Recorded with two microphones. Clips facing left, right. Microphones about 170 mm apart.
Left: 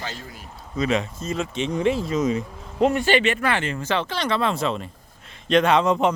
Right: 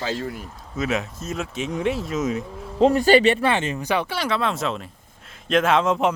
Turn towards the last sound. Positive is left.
turn(degrees=-5)  # may be behind; listen again after turning